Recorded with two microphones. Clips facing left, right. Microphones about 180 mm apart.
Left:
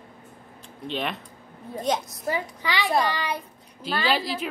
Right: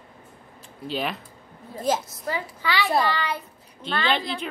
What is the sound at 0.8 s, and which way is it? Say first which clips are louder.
A woman's voice: right 1 dB; 5° right (ahead or behind).